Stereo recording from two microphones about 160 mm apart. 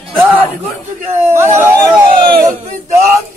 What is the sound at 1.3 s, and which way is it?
Speech, 15° right (ahead or behind).